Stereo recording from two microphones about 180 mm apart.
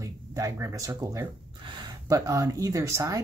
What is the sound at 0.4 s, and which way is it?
Speech, 15° right (ahead or behind).